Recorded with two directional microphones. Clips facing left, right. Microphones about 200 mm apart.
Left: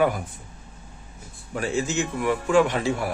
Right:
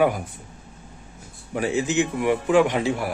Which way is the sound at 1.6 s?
15° right (ahead or behind).